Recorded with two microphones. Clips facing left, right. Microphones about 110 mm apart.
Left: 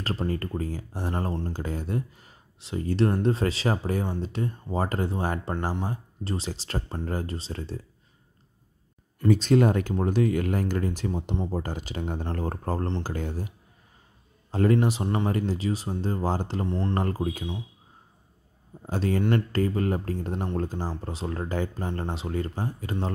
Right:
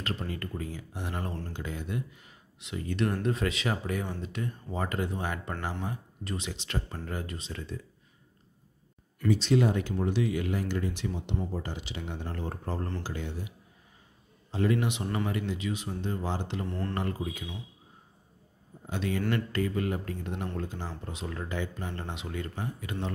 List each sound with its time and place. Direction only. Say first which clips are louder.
0.0 s speech: left 6 dB; 35° left (ahead or behind)
9.3 s speech: left 4 dB; 50° left (ahead or behind)
14.5 s speech: left 5 dB; 45° left (ahead or behind)
16.6 s speech: left 6 dB; 20° left (ahead or behind)
16.9 s speech: left 5 dB; 40° left (ahead or behind)
18.9 s speech: left 5 dB; 40° left (ahead or behind)